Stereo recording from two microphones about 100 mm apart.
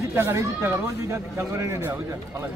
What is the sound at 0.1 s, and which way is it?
Speech, 30° right (ahead or behind).